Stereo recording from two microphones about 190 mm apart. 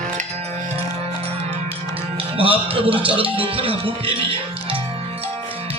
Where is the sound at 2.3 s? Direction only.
30° right (ahead or behind).